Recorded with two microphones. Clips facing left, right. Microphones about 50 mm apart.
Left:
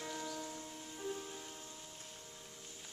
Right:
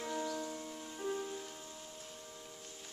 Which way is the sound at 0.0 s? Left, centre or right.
Centre.